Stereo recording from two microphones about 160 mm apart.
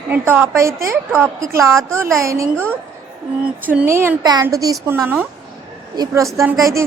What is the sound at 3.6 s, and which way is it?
A woman's voice, 10° right (ahead or behind).